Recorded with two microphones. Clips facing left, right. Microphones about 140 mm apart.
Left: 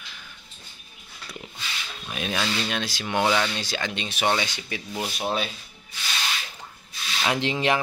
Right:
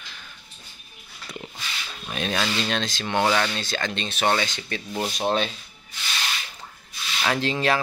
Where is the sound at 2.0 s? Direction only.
5° left (ahead or behind).